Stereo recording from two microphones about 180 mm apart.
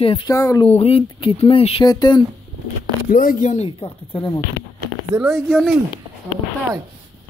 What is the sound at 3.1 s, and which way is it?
Speech, 50° left (ahead or behind).